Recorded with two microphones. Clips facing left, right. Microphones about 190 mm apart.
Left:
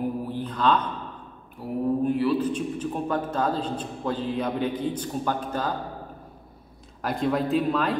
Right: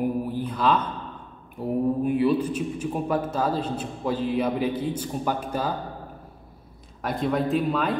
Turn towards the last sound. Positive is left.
turn(degrees=0)  # may be behind; listen again after turning